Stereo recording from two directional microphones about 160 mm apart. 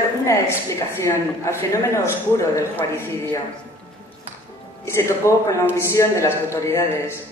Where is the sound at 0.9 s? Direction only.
15° left (ahead or behind).